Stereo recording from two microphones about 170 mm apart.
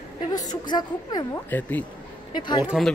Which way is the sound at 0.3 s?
25° left (ahead or behind).